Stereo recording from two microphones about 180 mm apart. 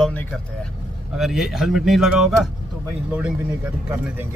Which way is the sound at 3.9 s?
10° right (ahead or behind).